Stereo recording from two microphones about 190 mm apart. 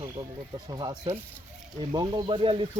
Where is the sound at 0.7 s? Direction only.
20° right (ahead or behind).